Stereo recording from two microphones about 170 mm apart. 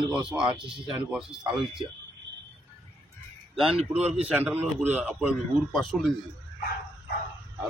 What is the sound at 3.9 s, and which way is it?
Speech, 40° right (ahead or behind).